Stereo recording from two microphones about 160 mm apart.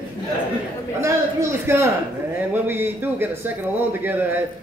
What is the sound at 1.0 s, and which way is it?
A man's voice, 15° right (ahead or behind).